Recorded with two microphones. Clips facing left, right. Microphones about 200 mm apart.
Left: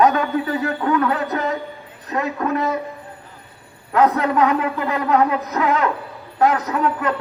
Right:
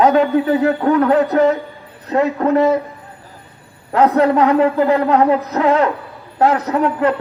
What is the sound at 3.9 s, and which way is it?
A man's voice, 30° right (ahead or behind).